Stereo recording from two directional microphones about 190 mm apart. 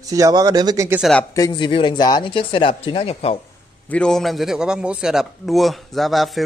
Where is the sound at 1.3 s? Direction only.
20° left (ahead or behind).